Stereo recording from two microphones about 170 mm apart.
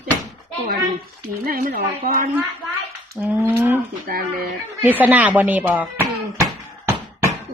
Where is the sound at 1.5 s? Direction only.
60° right (ahead or behind).